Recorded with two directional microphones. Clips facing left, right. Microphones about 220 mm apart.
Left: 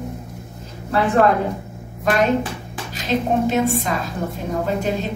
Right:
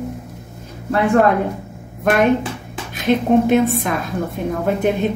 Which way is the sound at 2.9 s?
60° right (ahead or behind).